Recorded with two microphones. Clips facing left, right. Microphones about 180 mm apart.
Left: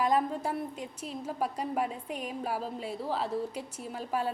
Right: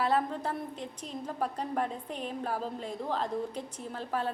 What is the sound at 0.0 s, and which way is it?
A woman's voice, 10° left (ahead or behind).